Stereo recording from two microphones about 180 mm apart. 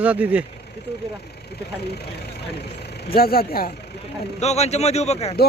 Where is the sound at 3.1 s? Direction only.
55° left (ahead or behind).